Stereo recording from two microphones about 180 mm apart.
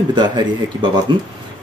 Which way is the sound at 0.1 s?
25° right (ahead or behind).